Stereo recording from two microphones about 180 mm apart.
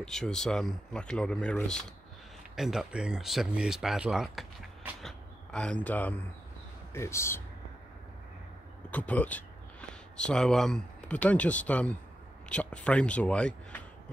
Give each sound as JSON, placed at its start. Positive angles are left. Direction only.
{"t": 0.0, "sound": "speech", "side_deg": 5}
{"t": 8.9, "sound": "speech", "side_deg": 10}